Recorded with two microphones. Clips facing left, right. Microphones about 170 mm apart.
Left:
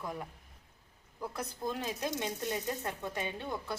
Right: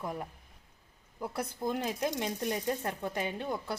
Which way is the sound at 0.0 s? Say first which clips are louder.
Right 3 dB; 25° right (ahead or behind).